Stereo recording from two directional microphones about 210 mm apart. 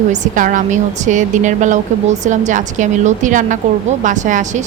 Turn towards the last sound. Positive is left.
turn(degrees=-35)  # may be behind; listen again after turning